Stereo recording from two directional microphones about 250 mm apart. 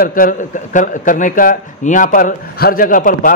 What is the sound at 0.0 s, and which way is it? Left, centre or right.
A man's voice, left.